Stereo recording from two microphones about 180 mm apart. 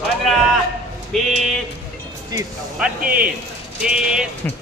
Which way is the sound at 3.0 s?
50° right (ahead or behind).